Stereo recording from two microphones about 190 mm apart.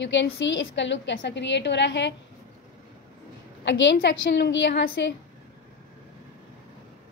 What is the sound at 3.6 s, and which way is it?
A woman's voice, 70° left (ahead or behind).